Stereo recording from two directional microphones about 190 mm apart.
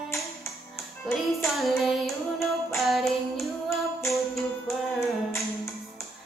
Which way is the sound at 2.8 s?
Centre (ahead or behind).